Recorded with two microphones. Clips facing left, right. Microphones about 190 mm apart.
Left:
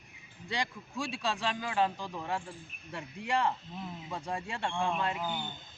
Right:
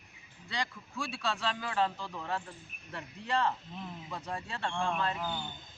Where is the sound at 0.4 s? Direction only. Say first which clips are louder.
Left 2 dB; 15° left (ahead or behind).